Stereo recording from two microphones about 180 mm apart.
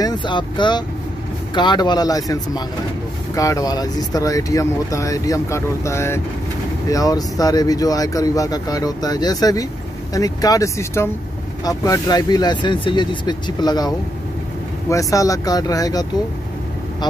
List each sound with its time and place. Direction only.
0.0 s speech: 25° left (ahead or behind)